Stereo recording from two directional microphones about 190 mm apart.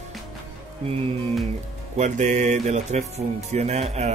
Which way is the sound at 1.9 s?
40° right (ahead or behind).